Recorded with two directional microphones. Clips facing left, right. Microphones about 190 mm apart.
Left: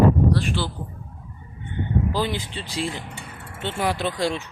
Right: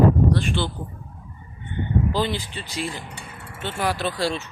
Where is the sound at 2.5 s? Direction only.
25° left (ahead or behind).